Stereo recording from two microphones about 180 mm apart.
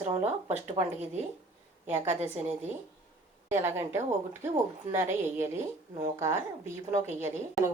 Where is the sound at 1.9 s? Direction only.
10° right (ahead or behind).